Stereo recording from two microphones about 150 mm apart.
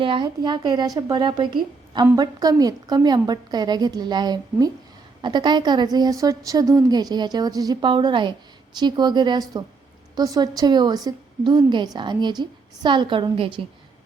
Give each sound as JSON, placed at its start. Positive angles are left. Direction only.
{"t": 0.0, "sound": "a woman's voice", "side_deg": -35}